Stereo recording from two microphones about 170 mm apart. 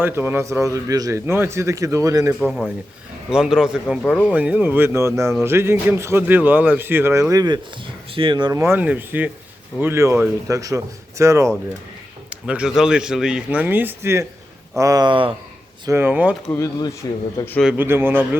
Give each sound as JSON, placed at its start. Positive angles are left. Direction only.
{"t": 0.0, "sound": "a man's voice", "side_deg": -10}
{"t": 2.4, "sound": "speech", "side_deg": 0}
{"t": 4.4, "sound": "a man's voice", "side_deg": -10}
{"t": 12.3, "sound": "a man's voice", "side_deg": -5}
{"t": 15.9, "sound": "a man's voice", "side_deg": -10}
{"t": 16.5, "sound": "speech", "side_deg": 20}
{"t": 17.6, "sound": "a man's voice", "side_deg": -10}